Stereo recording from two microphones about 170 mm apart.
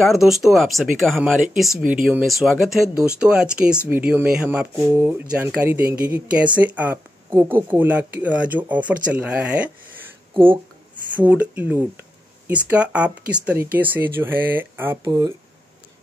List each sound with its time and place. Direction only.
0.0 s speech: centre (ahead or behind)
10.3 s speech: 30° right (ahead or behind)
11.2 s speech: 10° right (ahead or behind)